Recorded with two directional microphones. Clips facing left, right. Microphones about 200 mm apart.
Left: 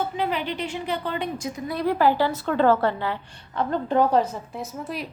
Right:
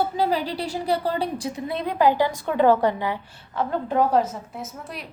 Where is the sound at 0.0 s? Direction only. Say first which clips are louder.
Right 3 dB; 35° right (ahead or behind).